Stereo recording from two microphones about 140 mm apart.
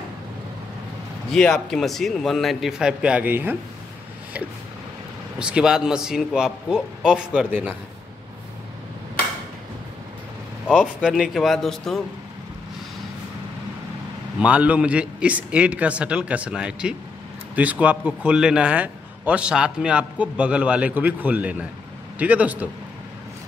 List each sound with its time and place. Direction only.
1.3 s a man's voice: centre (ahead or behind); by 3.5 s 15° right (ahead or behind)
5.4 s a man's voice: 5° right (ahead or behind)
10.7 s a man's voice: 5° right (ahead or behind)
14.4 s a man's voice: 10° right (ahead or behind)